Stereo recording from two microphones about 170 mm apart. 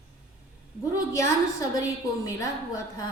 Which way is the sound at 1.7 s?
20° left (ahead or behind).